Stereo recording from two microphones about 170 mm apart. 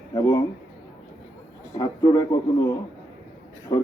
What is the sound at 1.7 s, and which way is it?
A man's voice, 20° left (ahead or behind).